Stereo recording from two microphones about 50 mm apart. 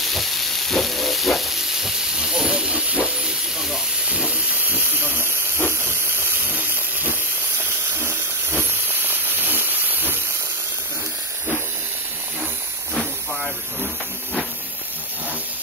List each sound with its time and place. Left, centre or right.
0.0 s steam: centre
2.4 s hiss: right
4.1 s steam: right
5.7 s hiss: right
7.9 s steam: right
8.6 s hiss: right
12.9 s hiss: centre